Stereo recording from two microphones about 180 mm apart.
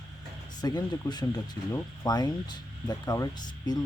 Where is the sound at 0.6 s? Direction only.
20° left (ahead or behind).